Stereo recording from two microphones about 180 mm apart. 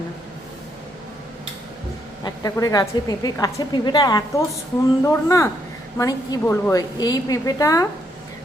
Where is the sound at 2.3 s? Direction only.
20° left (ahead or behind).